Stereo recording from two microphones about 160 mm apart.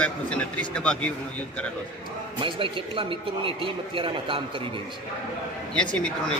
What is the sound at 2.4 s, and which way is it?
A man's voice, 35° right (ahead or behind).